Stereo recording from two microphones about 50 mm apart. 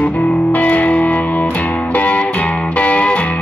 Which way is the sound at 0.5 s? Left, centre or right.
Left.